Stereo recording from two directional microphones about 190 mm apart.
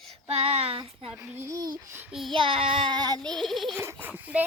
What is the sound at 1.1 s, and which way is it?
Speech, 15° right (ahead or behind).